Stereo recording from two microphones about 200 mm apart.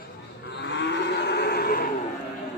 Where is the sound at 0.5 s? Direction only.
60° left (ahead or behind).